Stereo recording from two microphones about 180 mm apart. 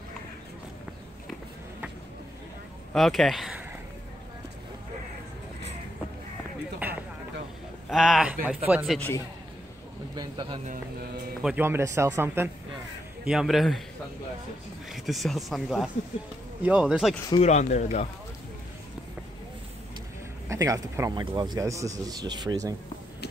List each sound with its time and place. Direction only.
2.9 s speech: centre (ahead or behind)
6.8 s a sound: 10° right (ahead or behind)
7.9 s speech: centre (ahead or behind)
10.1 s speech: 25° right (ahead or behind)
11.4 s speech: 10° right (ahead or behind)
13.2 s speech: 5° right (ahead or behind)
14.9 s speech: centre (ahead or behind)
17.4 s speech: 40° left (ahead or behind)
20.4 s speech: 20° right (ahead or behind)